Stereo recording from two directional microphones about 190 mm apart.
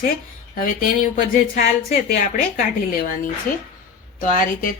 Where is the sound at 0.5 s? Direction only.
45° left (ahead or behind).